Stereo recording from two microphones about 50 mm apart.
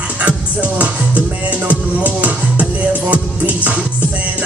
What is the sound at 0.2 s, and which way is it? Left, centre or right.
Music, right.